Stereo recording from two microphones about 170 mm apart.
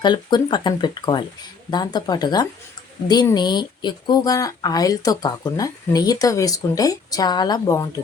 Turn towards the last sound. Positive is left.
turn(degrees=20)  # may be behind; listen again after turning